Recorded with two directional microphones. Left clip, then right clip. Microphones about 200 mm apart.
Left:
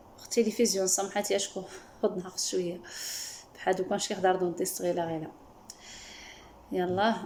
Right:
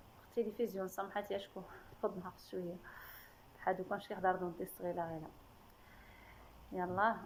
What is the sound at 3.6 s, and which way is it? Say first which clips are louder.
A woman's voice: left 9 dB; 25° left (ahead or behind).